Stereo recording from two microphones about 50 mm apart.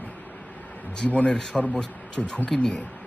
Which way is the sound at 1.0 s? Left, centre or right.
Left.